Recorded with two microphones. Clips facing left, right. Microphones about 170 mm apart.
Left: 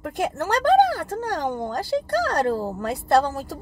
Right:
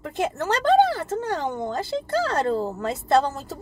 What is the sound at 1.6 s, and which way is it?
Speech, 25° right (ahead or behind).